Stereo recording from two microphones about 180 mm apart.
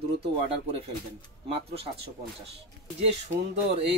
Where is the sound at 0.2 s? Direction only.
30° right (ahead or behind).